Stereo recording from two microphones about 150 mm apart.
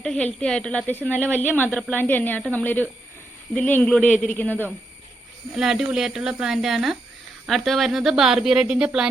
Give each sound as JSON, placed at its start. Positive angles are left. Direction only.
{"t": 0.0, "sound": "a woman's voice", "side_deg": 5}
{"t": 5.5, "sound": "speech", "side_deg": 0}